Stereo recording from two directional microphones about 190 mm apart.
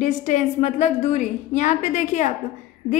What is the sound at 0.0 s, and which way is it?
A woman's voice, 40° left (ahead or behind).